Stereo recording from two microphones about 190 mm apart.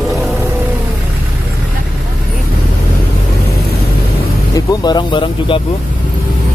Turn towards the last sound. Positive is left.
turn(degrees=25)  # may be behind; listen again after turning